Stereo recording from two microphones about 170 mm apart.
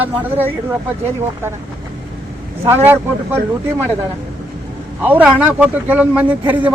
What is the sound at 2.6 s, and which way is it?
Speech, 15° right (ahead or behind).